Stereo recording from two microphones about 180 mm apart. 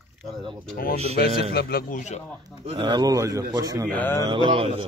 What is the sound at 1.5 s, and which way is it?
Speech, 60° left (ahead or behind).